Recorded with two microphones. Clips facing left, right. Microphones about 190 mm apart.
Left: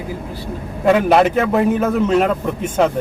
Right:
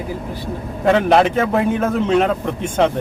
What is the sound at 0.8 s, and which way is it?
A man's voice, 5° left (ahead or behind).